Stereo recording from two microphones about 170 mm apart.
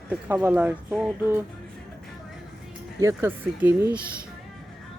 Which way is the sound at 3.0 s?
15° right (ahead or behind).